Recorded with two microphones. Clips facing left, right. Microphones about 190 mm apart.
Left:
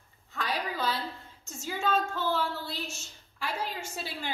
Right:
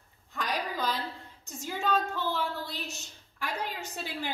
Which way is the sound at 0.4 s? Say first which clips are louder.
Even; 15° right (ahead or behind).